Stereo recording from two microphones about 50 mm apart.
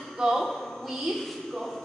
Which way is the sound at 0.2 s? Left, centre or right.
Centre.